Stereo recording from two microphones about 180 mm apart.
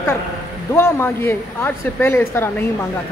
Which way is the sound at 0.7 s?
15° left (ahead or behind).